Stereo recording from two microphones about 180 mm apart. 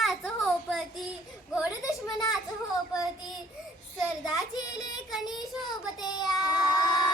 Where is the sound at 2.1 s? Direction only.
20° left (ahead or behind).